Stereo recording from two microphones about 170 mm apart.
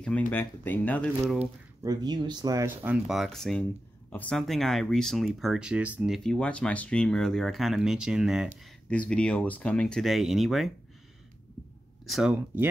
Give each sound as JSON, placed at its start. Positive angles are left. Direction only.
{"t": 0.3, "sound": "speech", "side_deg": 10}
{"t": 1.8, "sound": "speech", "side_deg": -25}
{"t": 8.8, "sound": "speech", "side_deg": 5}
{"t": 12.1, "sound": "speech", "side_deg": 0}